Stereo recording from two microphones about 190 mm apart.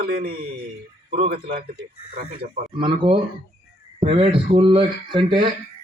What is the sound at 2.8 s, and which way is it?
Speech, 30° right (ahead or behind).